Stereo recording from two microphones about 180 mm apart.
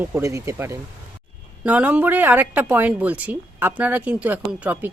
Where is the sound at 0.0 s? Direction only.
15° right (ahead or behind).